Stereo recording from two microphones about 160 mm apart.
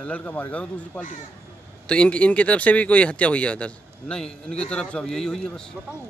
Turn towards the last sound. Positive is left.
turn(degrees=5)  # may be behind; listen again after turning